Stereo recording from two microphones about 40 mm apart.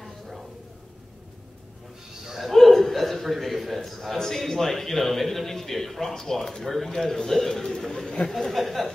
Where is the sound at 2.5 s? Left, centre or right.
Centre.